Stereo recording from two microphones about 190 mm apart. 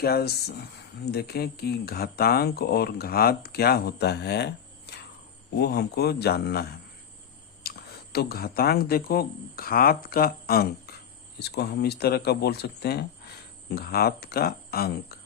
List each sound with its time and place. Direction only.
0.0 s speech: 55° left (ahead or behind)
7.6 s a sound: 55° left (ahead or behind)
8.1 s speech: 55° left (ahead or behind)